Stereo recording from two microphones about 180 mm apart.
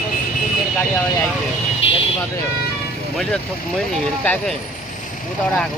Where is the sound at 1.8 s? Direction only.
35° left (ahead or behind).